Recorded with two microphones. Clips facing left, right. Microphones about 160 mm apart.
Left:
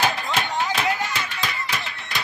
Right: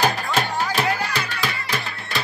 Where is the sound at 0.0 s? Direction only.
40° right (ahead or behind).